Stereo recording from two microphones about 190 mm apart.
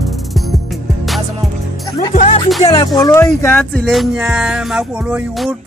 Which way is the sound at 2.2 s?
30° left (ahead or behind).